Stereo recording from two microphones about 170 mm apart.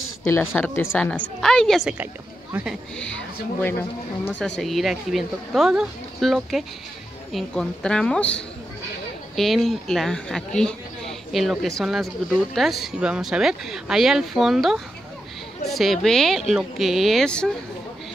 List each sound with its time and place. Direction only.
0.2 s speech: 15° left (ahead or behind)